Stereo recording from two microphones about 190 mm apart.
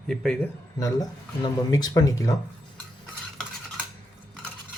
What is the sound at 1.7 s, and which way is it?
Speech, 20° left (ahead or behind).